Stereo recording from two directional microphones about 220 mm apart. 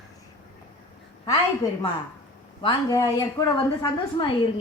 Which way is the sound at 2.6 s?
15° left (ahead or behind).